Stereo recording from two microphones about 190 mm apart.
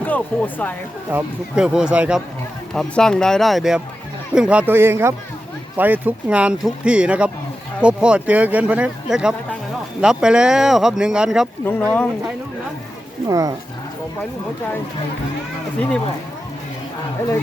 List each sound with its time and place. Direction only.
0.0 s speech: 10° left (ahead or behind)
1.1 s speech: 5° right (ahead or behind)
11.6 s speech: 10° left (ahead or behind)
13.2 s speech: 20° right (ahead or behind)